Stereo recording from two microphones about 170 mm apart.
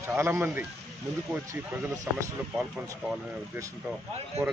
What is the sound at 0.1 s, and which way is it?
Speech, 15° right (ahead or behind).